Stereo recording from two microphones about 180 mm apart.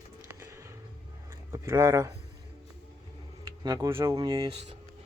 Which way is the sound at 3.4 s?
20° right (ahead or behind).